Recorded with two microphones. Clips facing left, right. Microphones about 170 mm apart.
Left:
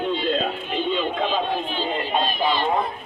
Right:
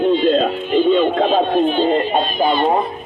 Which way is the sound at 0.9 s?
55° right (ahead or behind).